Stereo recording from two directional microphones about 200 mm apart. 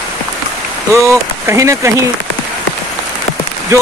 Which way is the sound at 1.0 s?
15° right (ahead or behind).